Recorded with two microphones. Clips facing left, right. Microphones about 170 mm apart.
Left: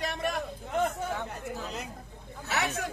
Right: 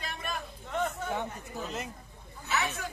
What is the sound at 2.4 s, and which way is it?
Chatter, 85° left.